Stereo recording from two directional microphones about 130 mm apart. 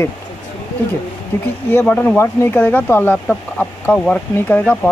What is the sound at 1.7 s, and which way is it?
Speech, 15° left (ahead or behind).